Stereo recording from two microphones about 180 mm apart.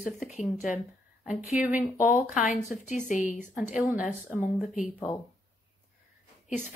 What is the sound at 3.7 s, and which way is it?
Speech, 5° right (ahead or behind).